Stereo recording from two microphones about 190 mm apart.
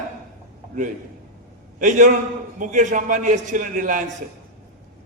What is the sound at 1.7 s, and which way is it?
A man's voice, 40° right (ahead or behind).